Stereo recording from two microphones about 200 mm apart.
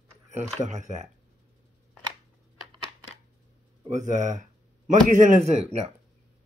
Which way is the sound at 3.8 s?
35° right (ahead or behind).